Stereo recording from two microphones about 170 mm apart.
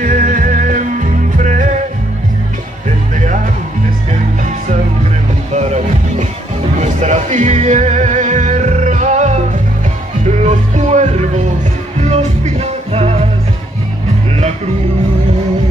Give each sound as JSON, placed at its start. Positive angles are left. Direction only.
{"t": 0.0, "sound": "music", "side_deg": -50}
{"t": 5.5, "sound": "music", "side_deg": -45}